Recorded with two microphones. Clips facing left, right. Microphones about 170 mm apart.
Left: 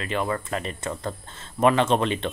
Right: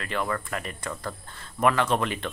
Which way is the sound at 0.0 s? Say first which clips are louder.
Left 3 dB; 20° left (ahead or behind).